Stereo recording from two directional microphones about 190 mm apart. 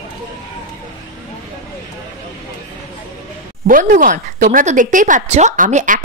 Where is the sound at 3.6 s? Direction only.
45° right (ahead or behind).